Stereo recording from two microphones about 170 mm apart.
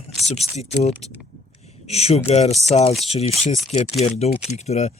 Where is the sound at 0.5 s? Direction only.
40° left (ahead or behind).